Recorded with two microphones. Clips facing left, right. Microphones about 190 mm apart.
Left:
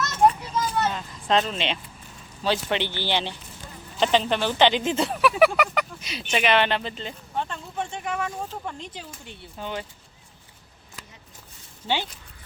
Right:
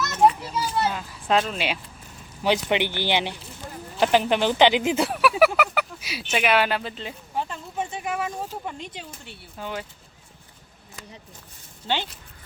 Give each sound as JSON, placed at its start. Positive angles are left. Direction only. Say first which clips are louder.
{"t": 0.0, "sound": "children playing", "louder": "right 1 dB", "side_deg": -5}
{"t": 2.4, "sound": "speech", "louder": "right 3 dB", "side_deg": -15}
{"t": 9.2, "sound": "speech", "louder": "left 1 dB", "side_deg": 15}
{"t": 9.6, "sound": "speech", "louder": "even", "side_deg": 0}